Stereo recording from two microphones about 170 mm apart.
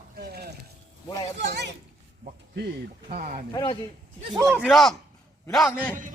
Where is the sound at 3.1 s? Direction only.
50° right (ahead or behind).